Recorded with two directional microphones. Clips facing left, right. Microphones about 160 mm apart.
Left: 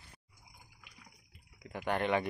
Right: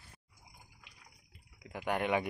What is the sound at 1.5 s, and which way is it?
Speech, 10° right (ahead or behind).